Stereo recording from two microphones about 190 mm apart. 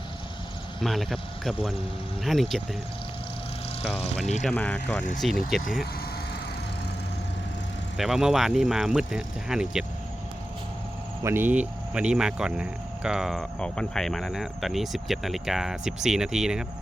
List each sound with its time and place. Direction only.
0.8 s speech: centre (ahead or behind)
3.8 s speech: 35° left (ahead or behind)
4.4 s speech: 10° left (ahead or behind)
7.9 s speech: centre (ahead or behind)
11.2 s speech: 10° right (ahead or behind)